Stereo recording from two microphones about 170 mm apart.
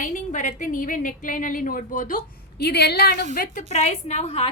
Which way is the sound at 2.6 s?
75° left (ahead or behind).